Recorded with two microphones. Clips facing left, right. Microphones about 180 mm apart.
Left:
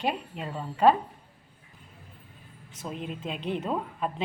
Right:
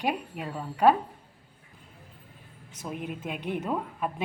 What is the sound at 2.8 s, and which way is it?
Speech, 15° right (ahead or behind).